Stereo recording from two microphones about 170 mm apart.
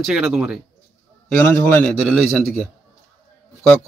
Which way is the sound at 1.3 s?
10° left (ahead or behind).